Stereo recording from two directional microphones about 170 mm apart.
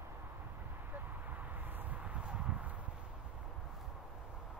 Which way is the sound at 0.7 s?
10° right (ahead or behind).